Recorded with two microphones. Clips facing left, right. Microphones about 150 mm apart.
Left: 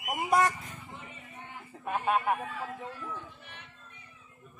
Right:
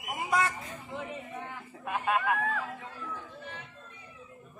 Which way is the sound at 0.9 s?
90° right.